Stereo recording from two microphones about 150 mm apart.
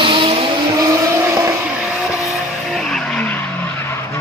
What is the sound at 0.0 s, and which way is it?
Vehicle, 35° right (ahead or behind).